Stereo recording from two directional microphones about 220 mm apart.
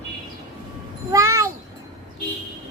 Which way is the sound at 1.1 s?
15° right (ahead or behind).